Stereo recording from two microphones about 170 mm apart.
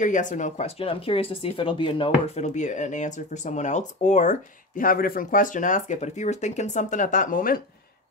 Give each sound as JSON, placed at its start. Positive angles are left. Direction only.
{"t": 0.0, "sound": "speech", "side_deg": 50}